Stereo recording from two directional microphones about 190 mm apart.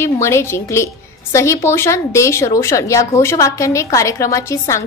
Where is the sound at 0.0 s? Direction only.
15° left (ahead or behind).